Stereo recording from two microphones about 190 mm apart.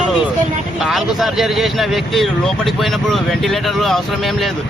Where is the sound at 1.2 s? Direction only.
Centre (ahead or behind).